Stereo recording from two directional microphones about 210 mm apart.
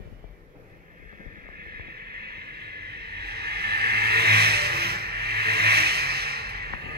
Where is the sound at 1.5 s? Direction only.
45° right (ahead or behind).